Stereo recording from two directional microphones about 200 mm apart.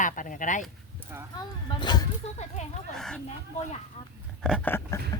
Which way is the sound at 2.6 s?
35° left (ahead or behind).